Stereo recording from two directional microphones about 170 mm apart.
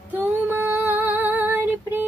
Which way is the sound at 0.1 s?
10° right (ahead or behind).